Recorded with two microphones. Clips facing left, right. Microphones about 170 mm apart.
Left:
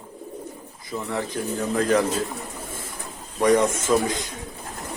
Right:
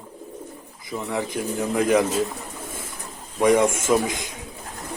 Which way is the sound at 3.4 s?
15° right (ahead or behind).